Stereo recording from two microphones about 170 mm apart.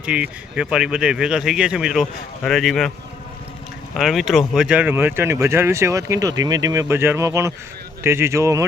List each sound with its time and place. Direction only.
0.0 s speech: 5° right (ahead or behind)
3.9 s speech: centre (ahead or behind); by 8.6 s 15° right (ahead or behind)